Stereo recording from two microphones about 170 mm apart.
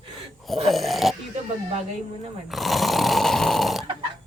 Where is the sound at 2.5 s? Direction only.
Centre (ahead or behind).